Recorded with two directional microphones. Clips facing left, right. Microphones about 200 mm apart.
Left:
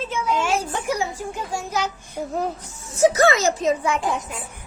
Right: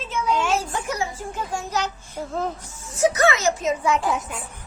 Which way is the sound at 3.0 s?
35° left (ahead or behind).